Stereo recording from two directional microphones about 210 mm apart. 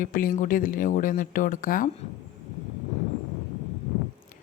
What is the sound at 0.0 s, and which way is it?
Speech, 40° left (ahead or behind).